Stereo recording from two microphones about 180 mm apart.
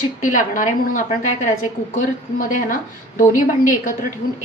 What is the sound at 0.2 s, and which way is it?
Speech, 45° left (ahead or behind).